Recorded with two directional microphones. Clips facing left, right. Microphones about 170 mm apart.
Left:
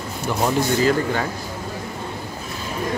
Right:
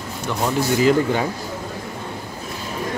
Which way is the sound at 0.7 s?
15° right (ahead or behind).